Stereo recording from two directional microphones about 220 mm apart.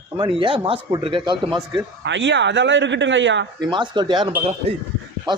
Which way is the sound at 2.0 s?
55° right (ahead or behind).